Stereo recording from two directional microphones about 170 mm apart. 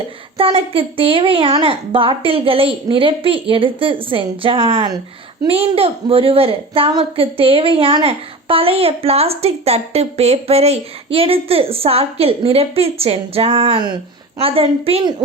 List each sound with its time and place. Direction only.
0.3 s a woman's voice: 30° right (ahead or behind)